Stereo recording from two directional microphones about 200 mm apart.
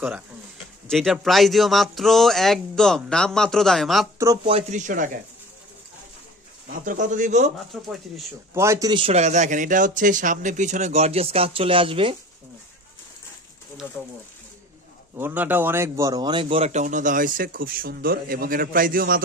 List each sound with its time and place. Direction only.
0.8 s speech: centre (ahead or behind)
4.5 s a man's voice: 35° right (ahead or behind)
6.7 s a man's voice: 40° right (ahead or behind)
7.5 s speech: centre (ahead or behind)
8.5 s a man's voice: 15° right (ahead or behind)
15.1 s speech: 10° right (ahead or behind); by 19.2 s 45° right (ahead or behind)